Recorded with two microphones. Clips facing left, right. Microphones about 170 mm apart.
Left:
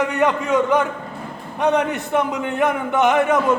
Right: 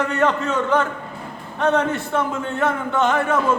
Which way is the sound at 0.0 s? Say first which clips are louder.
Left 1 dB; 15° left (ahead or behind).